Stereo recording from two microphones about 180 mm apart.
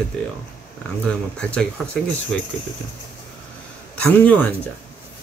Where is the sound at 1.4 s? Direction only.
5° left (ahead or behind).